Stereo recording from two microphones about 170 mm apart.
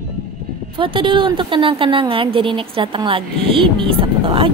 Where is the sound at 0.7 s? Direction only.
30° right (ahead or behind).